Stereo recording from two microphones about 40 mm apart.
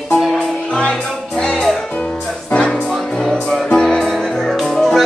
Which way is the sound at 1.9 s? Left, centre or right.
Left.